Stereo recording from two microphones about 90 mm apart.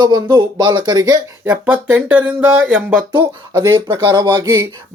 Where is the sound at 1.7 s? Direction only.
15° right (ahead or behind).